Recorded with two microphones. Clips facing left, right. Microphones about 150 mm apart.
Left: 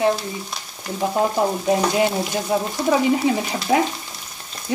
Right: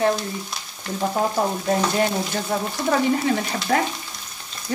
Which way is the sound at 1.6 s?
15° left (ahead or behind).